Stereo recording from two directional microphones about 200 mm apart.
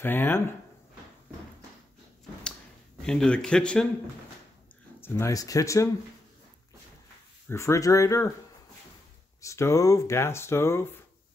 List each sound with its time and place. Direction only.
0.0 s speech: 10° left (ahead or behind)
3.0 s speech: 5° left (ahead or behind)
5.0 s speech: 15° left (ahead or behind)
7.4 s speech: 15° left (ahead or behind)
9.4 s speech: 15° left (ahead or behind)